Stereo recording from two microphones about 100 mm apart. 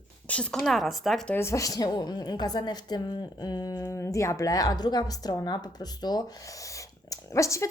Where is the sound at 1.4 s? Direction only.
30° left (ahead or behind).